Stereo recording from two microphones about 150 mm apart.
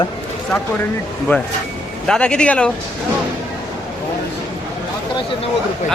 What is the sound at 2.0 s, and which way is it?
Speech, 5° left (ahead or behind).